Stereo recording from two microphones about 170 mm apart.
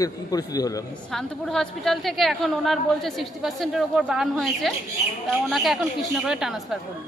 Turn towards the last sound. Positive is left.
turn(degrees=0)  # may be behind; listen again after turning